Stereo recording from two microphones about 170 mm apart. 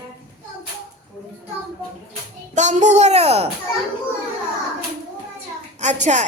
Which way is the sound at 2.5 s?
45° right (ahead or behind).